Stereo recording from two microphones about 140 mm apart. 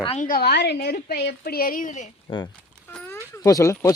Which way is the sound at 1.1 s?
90° left.